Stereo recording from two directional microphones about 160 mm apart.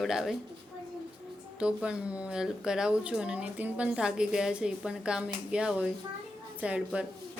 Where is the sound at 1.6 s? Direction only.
5° right (ahead or behind).